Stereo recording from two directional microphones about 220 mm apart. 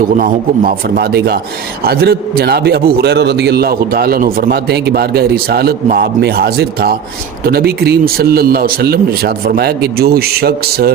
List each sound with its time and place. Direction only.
0.2 s a man's voice: 40° right (ahead or behind)